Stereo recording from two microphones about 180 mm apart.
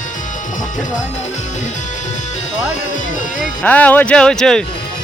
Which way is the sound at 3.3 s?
10° left (ahead or behind).